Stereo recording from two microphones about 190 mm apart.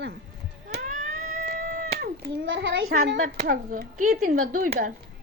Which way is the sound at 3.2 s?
45° right (ahead or behind).